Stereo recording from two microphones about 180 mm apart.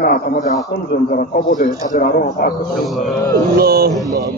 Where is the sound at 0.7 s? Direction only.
65° left (ahead or behind).